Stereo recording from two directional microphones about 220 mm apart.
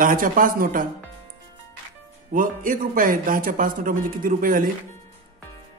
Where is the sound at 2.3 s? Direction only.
35° right (ahead or behind).